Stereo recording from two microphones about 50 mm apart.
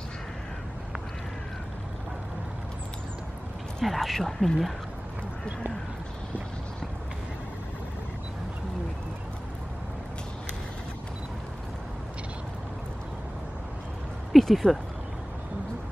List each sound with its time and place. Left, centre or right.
3.8 s speech: centre
14.5 s speech: centre